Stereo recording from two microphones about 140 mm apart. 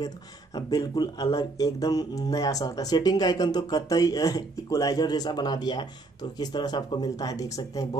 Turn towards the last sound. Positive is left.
turn(degrees=25)  # may be behind; listen again after turning